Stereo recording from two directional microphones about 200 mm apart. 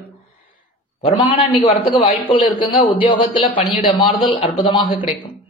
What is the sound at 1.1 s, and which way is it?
A man's voice, 25° left (ahead or behind).